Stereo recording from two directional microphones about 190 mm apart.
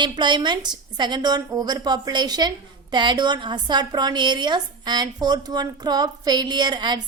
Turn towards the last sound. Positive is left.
turn(degrees=-20)  # may be behind; listen again after turning